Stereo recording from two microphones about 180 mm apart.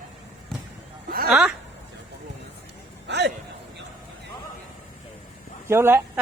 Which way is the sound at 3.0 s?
75° right (ahead or behind).